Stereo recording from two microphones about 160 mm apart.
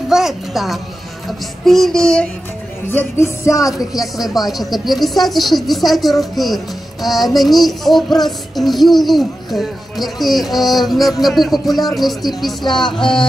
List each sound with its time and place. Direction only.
0.1 s speech: centre (ahead or behind)
2.9 s music: 15° left (ahead or behind)
4.0 s speech: centre (ahead or behind)